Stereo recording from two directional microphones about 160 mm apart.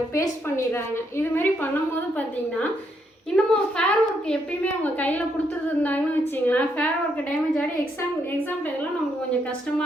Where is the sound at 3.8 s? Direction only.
5° left (ahead or behind).